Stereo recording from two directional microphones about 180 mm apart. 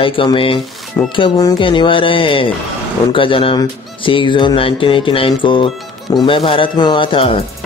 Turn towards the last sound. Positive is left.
turn(degrees=30)  # may be behind; listen again after turning